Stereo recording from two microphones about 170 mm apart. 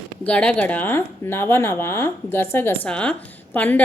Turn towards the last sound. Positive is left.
turn(degrees=10)  # may be behind; listen again after turning